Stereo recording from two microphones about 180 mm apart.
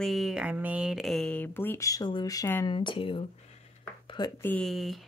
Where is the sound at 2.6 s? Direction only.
25° left (ahead or behind).